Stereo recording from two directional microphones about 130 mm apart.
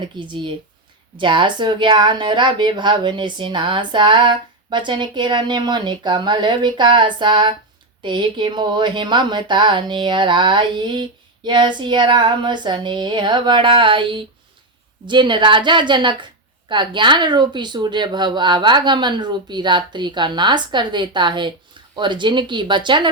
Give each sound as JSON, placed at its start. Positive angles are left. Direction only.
{"t": 0.2, "sound": "a woman's voice", "side_deg": -40}